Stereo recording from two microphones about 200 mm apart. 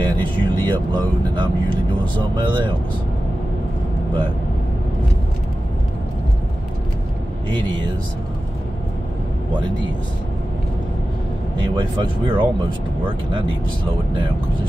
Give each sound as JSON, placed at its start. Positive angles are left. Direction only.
{"t": 0.0, "sound": "speech", "side_deg": -20}
{"t": 11.5, "sound": "speech", "side_deg": -20}